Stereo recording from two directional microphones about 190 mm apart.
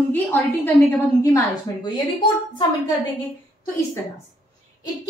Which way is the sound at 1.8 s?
25° left (ahead or behind).